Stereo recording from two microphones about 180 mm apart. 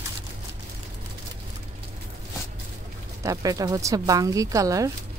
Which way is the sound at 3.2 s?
20° right (ahead or behind).